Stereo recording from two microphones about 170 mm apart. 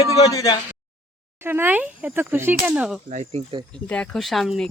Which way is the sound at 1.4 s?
15° right (ahead or behind).